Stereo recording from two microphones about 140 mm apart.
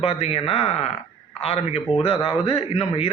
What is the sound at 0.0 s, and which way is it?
A man's voice, 45° left (ahead or behind).